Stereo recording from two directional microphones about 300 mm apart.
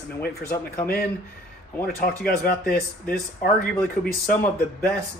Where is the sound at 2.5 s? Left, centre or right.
Left.